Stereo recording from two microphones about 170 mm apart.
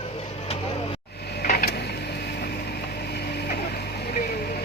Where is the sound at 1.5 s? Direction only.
60° left (ahead or behind).